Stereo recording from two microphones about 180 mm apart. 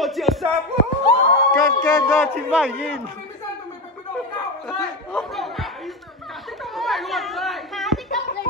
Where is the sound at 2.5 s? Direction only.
Centre (ahead or behind).